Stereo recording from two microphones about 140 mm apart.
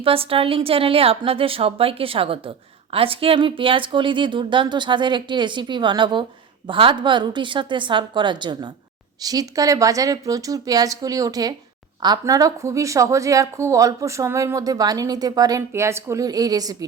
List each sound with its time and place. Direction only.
0.0 s a woman's voice: 40° right (ahead or behind); by 16.7 s 25° right (ahead or behind)